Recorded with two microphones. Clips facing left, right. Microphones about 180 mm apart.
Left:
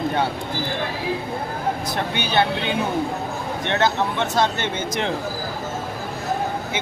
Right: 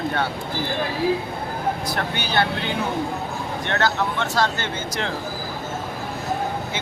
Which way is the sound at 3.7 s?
20° left (ahead or behind).